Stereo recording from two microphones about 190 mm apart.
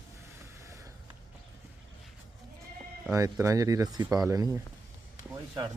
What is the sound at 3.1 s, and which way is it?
Speech, 15° right (ahead or behind).